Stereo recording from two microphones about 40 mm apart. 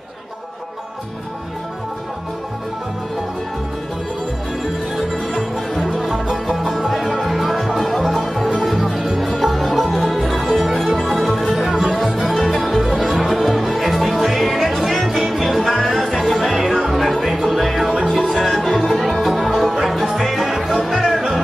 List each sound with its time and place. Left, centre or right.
4.9 s music: centre